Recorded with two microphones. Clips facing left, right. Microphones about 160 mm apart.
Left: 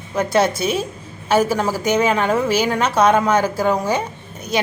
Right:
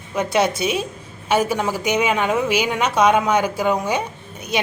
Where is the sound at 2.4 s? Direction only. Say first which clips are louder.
Left 2 dB; 15° right (ahead or behind).